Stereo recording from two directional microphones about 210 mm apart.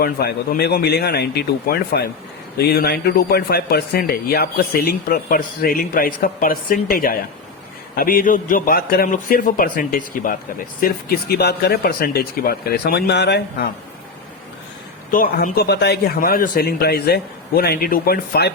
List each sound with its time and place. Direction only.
0.0 s a man's voice: 45° left (ahead or behind)
15.1 s speech: 40° left (ahead or behind)